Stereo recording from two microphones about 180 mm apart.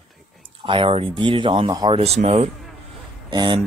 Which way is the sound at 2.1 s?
35° right (ahead or behind).